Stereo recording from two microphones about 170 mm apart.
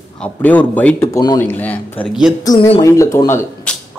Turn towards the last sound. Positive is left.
turn(degrees=10)  # may be behind; listen again after turning